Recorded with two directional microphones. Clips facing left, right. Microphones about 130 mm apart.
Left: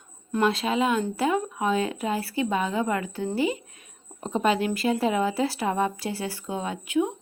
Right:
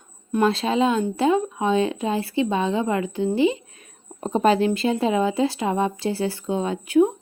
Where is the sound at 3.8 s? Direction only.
40° right (ahead or behind).